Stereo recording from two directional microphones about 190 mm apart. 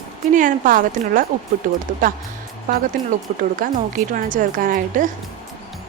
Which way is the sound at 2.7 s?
45° right (ahead or behind).